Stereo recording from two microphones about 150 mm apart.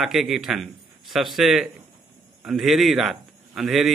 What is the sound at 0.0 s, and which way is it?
A man's voice, centre (ahead or behind).